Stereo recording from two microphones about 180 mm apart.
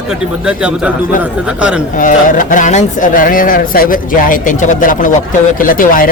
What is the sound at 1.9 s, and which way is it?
Speech, 45° left (ahead or behind).